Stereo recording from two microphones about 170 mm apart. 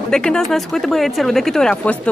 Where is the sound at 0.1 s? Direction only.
5° left (ahead or behind).